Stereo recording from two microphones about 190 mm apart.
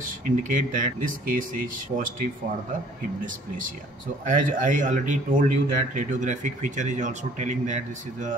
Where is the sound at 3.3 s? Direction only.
45° right (ahead or behind).